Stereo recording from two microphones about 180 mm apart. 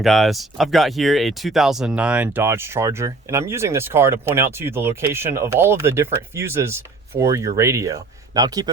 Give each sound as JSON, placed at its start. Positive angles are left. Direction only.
{"t": 0.0, "sound": "a man's voice", "side_deg": 0}